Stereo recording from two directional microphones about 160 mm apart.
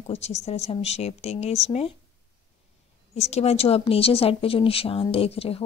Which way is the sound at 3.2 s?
40° left (ahead or behind).